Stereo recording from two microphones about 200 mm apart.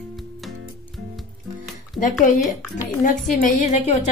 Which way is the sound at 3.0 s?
40° left (ahead or behind).